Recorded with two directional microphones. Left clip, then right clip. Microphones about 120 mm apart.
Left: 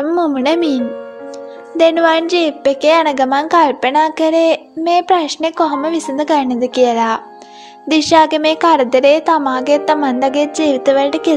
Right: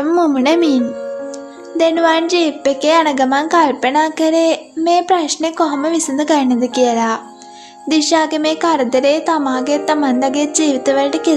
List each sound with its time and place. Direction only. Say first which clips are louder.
0.0 s a child's voice: right 1 dB; 25° left (ahead or behind)
1.8 s a woman's voice: left 2 dB; 55° left (ahead or behind)